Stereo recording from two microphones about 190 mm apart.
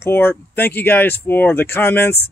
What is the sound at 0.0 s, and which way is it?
Speech, 10° left (ahead or behind).